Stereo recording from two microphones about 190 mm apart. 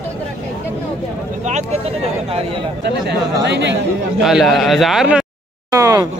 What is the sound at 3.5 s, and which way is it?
Speech, 65° right (ahead or behind).